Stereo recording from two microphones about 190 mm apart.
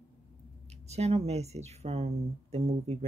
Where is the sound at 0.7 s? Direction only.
35° right (ahead or behind).